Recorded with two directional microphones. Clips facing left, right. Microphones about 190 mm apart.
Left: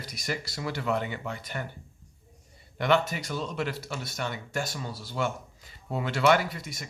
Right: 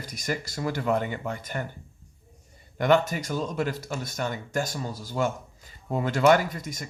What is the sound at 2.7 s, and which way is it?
Speech, 45° right (ahead or behind).